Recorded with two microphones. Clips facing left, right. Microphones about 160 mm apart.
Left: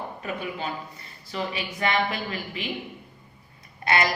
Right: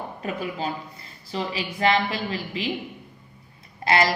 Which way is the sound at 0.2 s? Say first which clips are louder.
Right 4 dB; 35° right (ahead or behind).